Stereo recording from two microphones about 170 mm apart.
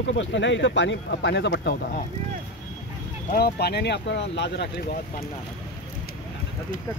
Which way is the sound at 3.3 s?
70° left (ahead or behind).